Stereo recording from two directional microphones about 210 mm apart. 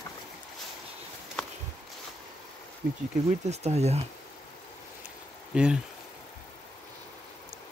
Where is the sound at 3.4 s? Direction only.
30° right (ahead or behind).